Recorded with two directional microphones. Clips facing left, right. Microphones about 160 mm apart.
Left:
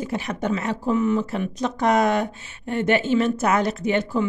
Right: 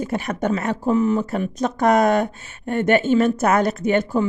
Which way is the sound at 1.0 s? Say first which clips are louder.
Right 1 dB; 35° right (ahead or behind).